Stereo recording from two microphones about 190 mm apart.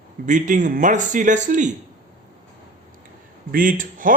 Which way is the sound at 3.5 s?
45° right (ahead or behind).